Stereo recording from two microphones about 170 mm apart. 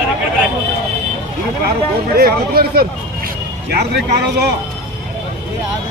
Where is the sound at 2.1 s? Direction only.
60° right (ahead or behind).